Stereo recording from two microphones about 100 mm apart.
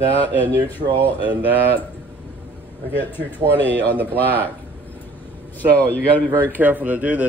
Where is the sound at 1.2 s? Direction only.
15° right (ahead or behind).